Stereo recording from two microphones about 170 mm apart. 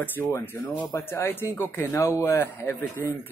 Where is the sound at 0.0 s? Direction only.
15° left (ahead or behind).